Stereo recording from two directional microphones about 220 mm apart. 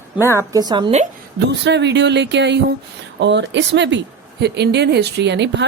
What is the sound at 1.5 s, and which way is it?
Speech, 50° right (ahead or behind).